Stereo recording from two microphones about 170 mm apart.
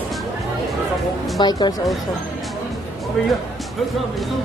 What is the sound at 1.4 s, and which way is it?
Speech, 25° left (ahead or behind).